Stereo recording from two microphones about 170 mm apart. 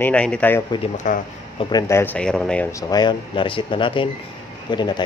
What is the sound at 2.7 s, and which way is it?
Speech, 25° left (ahead or behind).